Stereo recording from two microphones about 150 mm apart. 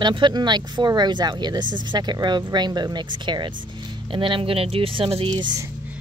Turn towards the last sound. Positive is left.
turn(degrees=-30)  # may be behind; listen again after turning